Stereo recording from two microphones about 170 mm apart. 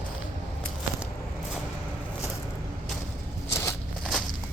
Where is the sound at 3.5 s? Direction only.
15° left (ahead or behind).